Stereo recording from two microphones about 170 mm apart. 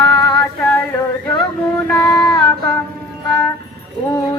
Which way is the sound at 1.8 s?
5° left (ahead or behind).